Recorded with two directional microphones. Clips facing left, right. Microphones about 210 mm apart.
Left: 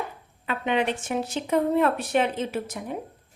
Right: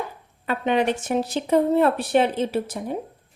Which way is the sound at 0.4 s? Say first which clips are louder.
Right 4 dB; 40° right (ahead or behind).